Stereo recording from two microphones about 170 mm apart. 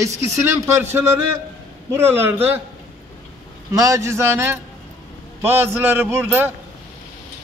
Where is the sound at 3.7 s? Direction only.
20° right (ahead or behind).